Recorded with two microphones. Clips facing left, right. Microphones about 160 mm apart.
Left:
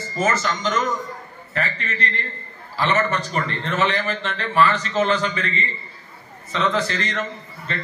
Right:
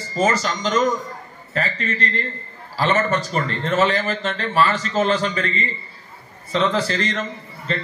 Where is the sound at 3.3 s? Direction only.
35° right (ahead or behind).